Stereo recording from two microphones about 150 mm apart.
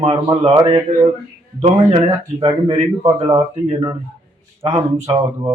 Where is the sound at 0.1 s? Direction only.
30° right (ahead or behind).